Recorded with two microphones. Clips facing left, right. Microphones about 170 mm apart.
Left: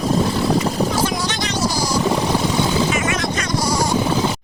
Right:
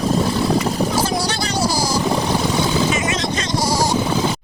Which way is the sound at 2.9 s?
20° right (ahead or behind).